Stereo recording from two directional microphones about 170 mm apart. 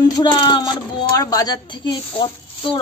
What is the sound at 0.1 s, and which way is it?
A woman's voice, 25° left (ahead or behind).